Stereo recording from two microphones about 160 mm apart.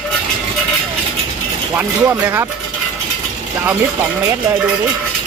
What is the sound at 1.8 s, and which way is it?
Speech, 15° right (ahead or behind).